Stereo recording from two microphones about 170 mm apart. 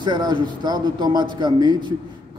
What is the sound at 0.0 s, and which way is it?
A man's voice, 25° right (ahead or behind).